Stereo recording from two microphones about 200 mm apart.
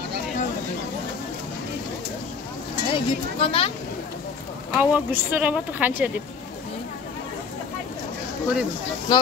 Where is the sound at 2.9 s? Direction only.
30° left (ahead or behind).